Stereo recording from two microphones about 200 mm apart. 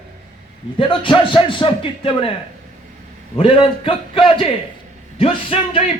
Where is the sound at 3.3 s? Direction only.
25° left (ahead or behind).